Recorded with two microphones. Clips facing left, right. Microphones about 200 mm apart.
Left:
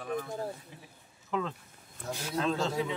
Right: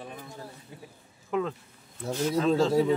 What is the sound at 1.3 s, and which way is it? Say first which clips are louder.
Speech: right 4 dB; 5° right (ahead or behind).